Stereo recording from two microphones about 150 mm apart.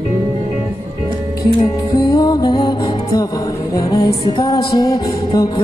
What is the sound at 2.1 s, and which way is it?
Music, 25° left (ahead or behind).